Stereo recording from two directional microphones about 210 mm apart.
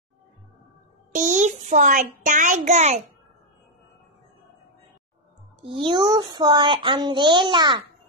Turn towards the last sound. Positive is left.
turn(degrees=-20)  # may be behind; listen again after turning